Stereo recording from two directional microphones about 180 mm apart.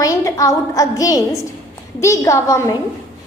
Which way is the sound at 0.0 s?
20° left (ahead or behind).